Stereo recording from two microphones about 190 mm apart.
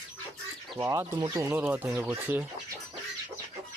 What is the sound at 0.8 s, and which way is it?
Speech, 20° right (ahead or behind).